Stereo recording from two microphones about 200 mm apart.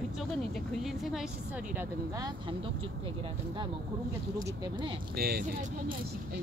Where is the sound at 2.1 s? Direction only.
20° right (ahead or behind).